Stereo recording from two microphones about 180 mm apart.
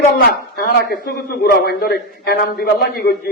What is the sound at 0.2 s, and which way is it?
A man's voice, 55° left (ahead or behind).